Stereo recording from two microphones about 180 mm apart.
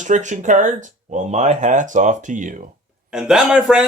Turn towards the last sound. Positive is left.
turn(degrees=-5)  # may be behind; listen again after turning